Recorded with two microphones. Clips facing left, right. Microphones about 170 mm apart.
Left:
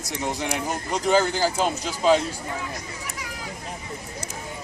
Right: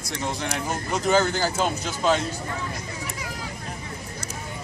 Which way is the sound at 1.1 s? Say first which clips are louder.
Left 1 dB; 5° left (ahead or behind).